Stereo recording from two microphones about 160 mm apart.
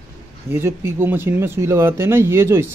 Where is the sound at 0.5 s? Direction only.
15° right (ahead or behind).